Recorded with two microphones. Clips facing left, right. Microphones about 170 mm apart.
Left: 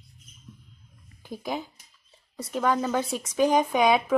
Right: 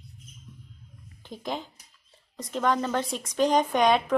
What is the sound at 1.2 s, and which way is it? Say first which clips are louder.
A woman's voice: left 1 dB; 10° left (ahead or behind).